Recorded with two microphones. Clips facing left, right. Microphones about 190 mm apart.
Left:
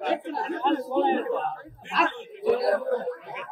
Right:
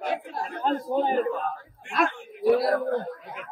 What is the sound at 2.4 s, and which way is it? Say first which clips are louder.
Speech: right 1 dB; centre (ahead or behind).